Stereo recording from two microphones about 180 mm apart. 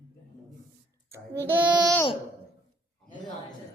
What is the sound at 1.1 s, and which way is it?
Child singing, 15° right (ahead or behind).